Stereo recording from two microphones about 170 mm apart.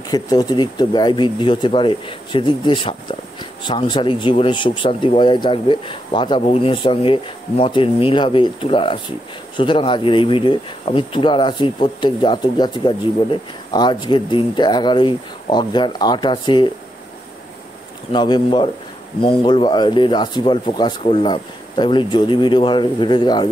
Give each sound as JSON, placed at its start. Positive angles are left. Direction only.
{"t": 0.1, "sound": "speech", "side_deg": 20}
{"t": 18.1, "sound": "speech", "side_deg": 25}